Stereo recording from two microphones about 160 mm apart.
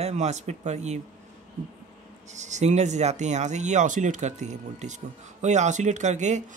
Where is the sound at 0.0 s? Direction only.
45° right (ahead or behind).